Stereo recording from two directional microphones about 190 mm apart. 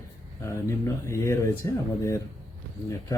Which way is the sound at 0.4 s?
15° left (ahead or behind).